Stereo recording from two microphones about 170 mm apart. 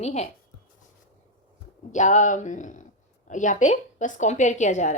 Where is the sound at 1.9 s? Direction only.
45° left (ahead or behind).